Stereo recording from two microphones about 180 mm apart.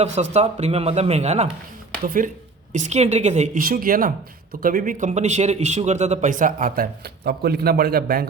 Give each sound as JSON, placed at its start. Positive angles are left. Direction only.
{"t": 0.2, "sound": "a man's voice", "side_deg": -35}
{"t": 2.0, "sound": "a man's voice", "side_deg": -50}
{"t": 2.7, "sound": "a man's voice", "side_deg": -40}